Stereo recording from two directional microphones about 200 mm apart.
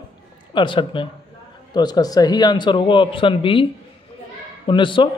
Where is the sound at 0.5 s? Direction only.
25° left (ahead or behind).